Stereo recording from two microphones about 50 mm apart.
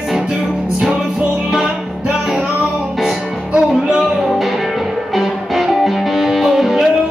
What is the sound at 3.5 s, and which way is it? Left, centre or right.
Music, centre.